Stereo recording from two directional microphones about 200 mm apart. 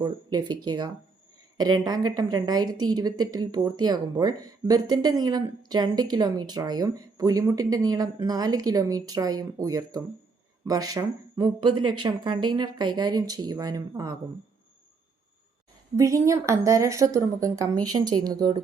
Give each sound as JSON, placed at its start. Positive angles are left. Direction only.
{"t": 0.0, "sound": "a woman's voice", "side_deg": -20}
{"t": 16.0, "sound": "a woman's voice", "side_deg": -15}